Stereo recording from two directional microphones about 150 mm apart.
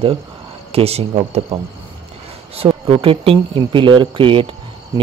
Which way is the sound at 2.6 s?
40° right (ahead or behind).